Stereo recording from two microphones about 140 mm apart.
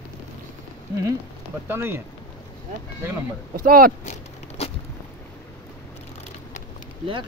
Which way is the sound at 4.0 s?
55° left (ahead or behind).